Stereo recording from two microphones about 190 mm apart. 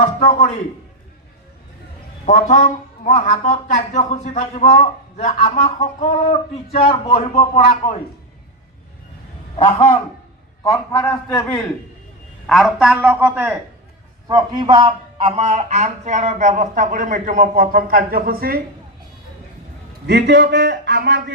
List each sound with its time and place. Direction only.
0.0 s speech: 40° left (ahead or behind)
2.2 s speech: 40° left (ahead or behind)
9.6 s a man's voice: 30° left (ahead or behind)
10.6 s a man's voice: 15° left (ahead or behind)
12.5 s a man's voice: centre (ahead or behind)
14.3 s a man's voice: 20° right (ahead or behind); by 18.6 s 50° right (ahead or behind)
20.1 s speech: 65° right (ahead or behind)